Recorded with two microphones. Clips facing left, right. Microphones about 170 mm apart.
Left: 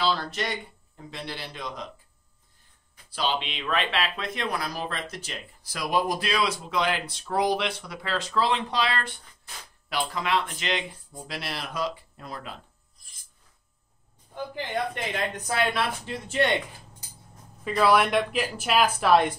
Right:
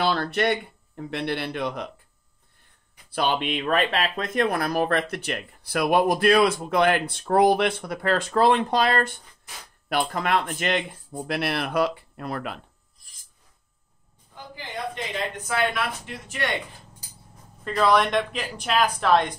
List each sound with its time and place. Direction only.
0.0 s speech: 60° right (ahead or behind)
3.1 s speech: 55° right (ahead or behind)
15.4 s speech: 30° left (ahead or behind)
17.6 s speech: 5° left (ahead or behind)